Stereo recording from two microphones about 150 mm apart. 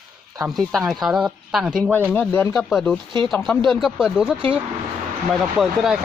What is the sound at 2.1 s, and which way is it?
Speech, 15° left (ahead or behind).